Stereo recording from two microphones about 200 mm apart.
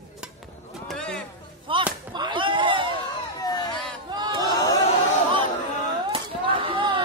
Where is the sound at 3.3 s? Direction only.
20° left (ahead or behind).